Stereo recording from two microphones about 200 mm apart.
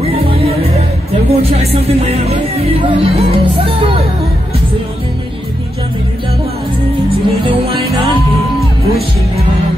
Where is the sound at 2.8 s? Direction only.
25° right (ahead or behind).